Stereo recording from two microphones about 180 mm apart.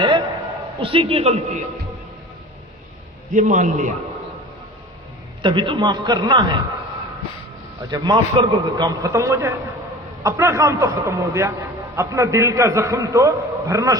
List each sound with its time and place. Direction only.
0.8 s a man's voice: 30° right (ahead or behind)
3.3 s a man's voice: 45° right (ahead or behind)
5.4 s a man's voice: 25° right (ahead or behind)
7.8 s a man's voice: 20° right (ahead or behind)